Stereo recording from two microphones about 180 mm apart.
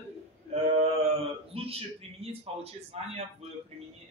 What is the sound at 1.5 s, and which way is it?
A man's voice, 30° right (ahead or behind).